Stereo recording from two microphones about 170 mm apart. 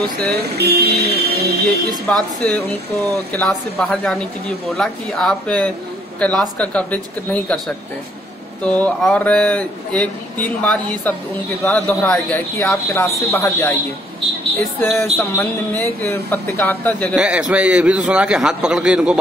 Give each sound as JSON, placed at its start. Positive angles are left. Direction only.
{"t": 0.3, "sound": "speech", "side_deg": -70}
{"t": 2.0, "sound": "a man's voice", "side_deg": 5}
{"t": 13.3, "sound": "a man's voice", "side_deg": 15}
{"t": 14.8, "sound": "a man's voice", "side_deg": 15}
{"t": 17.1, "sound": "speech", "side_deg": -5}